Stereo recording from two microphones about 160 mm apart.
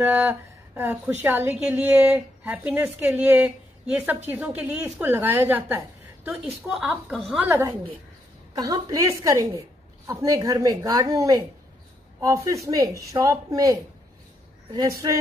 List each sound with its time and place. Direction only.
0.0 s a woman's voice: 10° right (ahead or behind)
7.3 s a woman's voice: 15° right (ahead or behind)